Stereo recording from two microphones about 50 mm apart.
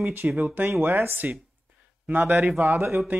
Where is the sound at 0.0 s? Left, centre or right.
Right.